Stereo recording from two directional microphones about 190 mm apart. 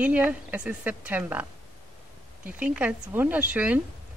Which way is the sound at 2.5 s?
5° right (ahead or behind).